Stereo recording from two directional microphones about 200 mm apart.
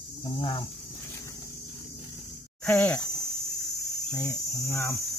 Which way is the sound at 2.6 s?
5° left (ahead or behind).